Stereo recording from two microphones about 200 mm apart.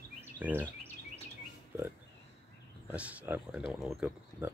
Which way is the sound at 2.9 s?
5° right (ahead or behind).